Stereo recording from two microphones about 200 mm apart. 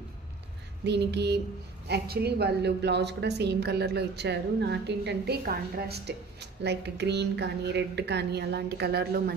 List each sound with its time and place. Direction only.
0.8 s a woman's voice: 60° right (ahead or behind)